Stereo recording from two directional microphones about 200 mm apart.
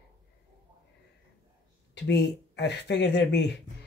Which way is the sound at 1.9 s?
60° left (ahead or behind).